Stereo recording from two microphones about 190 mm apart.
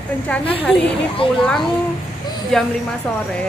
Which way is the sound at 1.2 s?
30° left (ahead or behind).